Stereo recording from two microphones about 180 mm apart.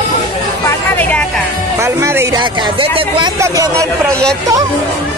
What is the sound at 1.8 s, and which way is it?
Speech, 15° right (ahead or behind).